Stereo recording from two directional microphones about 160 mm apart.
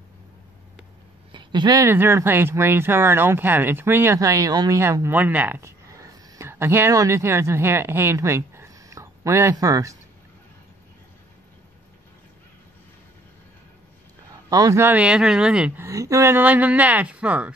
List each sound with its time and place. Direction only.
1.3 s speech: 30° right (ahead or behind)
14.5 s speech: 20° right (ahead or behind)